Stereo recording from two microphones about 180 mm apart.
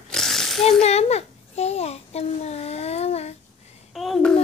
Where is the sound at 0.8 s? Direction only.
35° left (ahead or behind).